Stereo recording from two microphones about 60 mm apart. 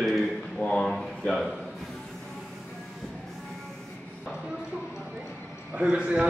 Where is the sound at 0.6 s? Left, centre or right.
Centre.